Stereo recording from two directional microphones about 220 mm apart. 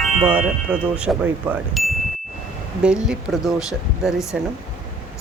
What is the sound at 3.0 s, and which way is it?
Speech, centre (ahead or behind).